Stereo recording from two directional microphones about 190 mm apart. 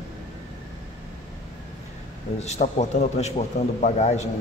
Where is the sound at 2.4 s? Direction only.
35° left (ahead or behind).